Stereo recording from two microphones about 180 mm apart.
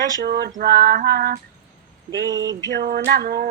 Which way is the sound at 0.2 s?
65° right (ahead or behind).